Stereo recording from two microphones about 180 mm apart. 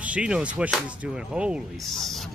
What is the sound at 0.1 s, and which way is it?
Speech, 5° right (ahead or behind).